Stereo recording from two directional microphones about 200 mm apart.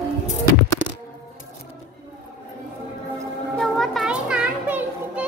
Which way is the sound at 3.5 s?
Centre (ahead or behind).